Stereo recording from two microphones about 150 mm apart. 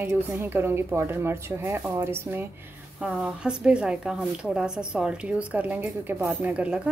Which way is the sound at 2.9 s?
5° right (ahead or behind).